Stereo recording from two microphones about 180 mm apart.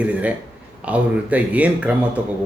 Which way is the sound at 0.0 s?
5° right (ahead or behind).